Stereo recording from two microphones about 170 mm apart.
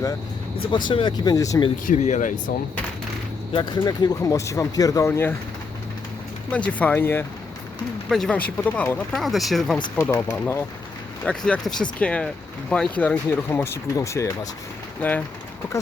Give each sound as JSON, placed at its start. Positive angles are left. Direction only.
{"t": 0.7, "sound": "speech", "side_deg": 30}
{"t": 1.9, "sound": "speech", "side_deg": 45}
{"t": 3.5, "sound": "speech", "side_deg": 25}
{"t": 6.5, "sound": "speech", "side_deg": 10}